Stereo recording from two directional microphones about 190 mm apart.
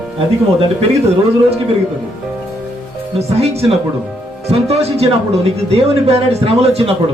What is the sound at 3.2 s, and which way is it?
A woman's voice, 35° right (ahead or behind).